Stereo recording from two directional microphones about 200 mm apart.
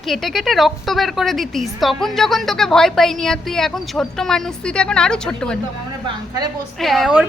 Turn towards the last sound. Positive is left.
turn(degrees=-5)  # may be behind; listen again after turning